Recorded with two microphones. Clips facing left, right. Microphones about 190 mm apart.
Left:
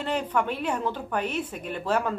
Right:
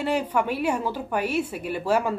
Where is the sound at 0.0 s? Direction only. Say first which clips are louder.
Right 3 dB; 10° right (ahead or behind).